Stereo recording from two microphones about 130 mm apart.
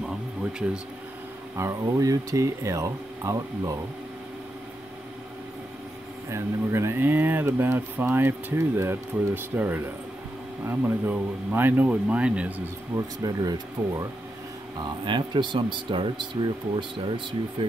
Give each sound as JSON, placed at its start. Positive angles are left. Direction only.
{"t": 0.4, "sound": "a sound", "side_deg": -5}
{"t": 1.6, "sound": "speech", "side_deg": -25}
{"t": 6.3, "sound": "speech", "side_deg": -20}
{"t": 12.9, "sound": "speech", "side_deg": -25}
{"t": 14.8, "sound": "speech", "side_deg": -35}
{"t": 17.6, "sound": "speech", "side_deg": -40}